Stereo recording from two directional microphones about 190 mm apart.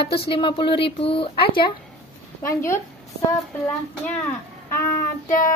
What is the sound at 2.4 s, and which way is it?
Speech, 15° left (ahead or behind).